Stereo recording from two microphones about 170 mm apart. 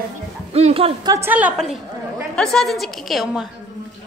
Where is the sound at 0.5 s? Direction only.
35° right (ahead or behind).